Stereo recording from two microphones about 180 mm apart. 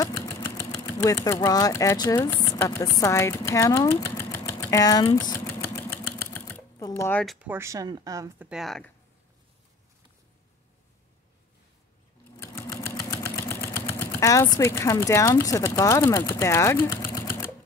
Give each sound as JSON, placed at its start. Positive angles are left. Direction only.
{"t": 0.6, "sound": "speech", "side_deg": 15}
{"t": 5.5, "sound": "sewing machine", "side_deg": 15}
{"t": 7.2, "sound": "speech", "side_deg": -10}
{"t": 8.5, "sound": "a woman's voice", "side_deg": 0}
{"t": 12.4, "sound": "a sound", "side_deg": 15}
{"t": 17.1, "sound": "typewriter", "side_deg": 15}